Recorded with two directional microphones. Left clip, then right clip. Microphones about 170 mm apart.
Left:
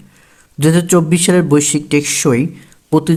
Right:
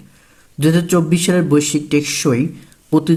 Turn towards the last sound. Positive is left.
turn(degrees=25)  # may be behind; listen again after turning